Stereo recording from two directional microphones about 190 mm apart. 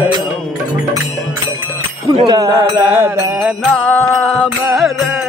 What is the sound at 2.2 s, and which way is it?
Speech, 20° right (ahead or behind).